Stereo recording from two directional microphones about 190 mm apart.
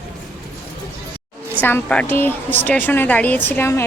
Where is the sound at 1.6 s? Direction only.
10° left (ahead or behind).